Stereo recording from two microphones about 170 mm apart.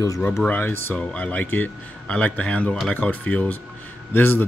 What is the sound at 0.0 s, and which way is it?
Speech, 20° left (ahead or behind).